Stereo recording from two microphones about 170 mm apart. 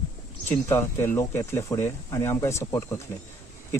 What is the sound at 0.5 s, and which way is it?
Speech, 15° left (ahead or behind).